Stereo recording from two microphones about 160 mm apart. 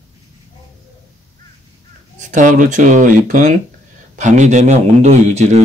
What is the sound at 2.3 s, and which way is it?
Speech, 55° right (ahead or behind).